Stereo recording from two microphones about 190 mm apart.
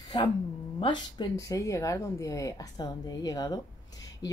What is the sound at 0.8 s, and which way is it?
Speech, 25° left (ahead or behind).